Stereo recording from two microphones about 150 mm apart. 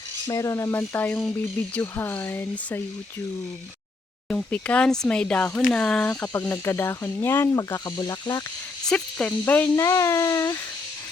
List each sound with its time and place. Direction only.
0.3 s speech: 20° left (ahead or behind)
4.3 s speech: 10° left (ahead or behind)
8.9 s speech: 10° left (ahead or behind)